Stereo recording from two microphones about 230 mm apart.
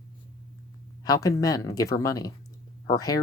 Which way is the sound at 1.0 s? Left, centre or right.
Centre.